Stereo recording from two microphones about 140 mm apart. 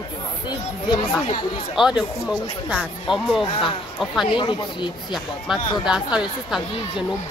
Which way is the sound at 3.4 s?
35° left (ahead or behind).